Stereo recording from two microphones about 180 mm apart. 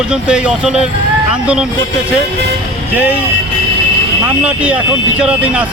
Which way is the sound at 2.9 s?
10° right (ahead or behind).